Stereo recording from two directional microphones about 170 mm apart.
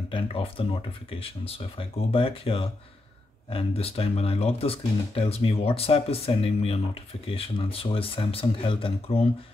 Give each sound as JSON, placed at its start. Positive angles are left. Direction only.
{"t": 0.1, "sound": "speech", "side_deg": 30}